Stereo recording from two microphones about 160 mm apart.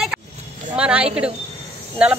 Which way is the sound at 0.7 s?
5° right (ahead or behind).